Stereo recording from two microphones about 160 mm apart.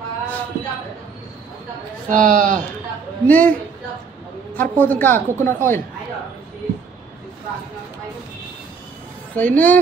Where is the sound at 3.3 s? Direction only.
10° left (ahead or behind).